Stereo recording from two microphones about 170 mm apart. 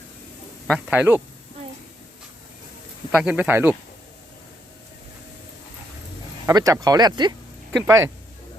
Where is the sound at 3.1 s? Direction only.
5° right (ahead or behind).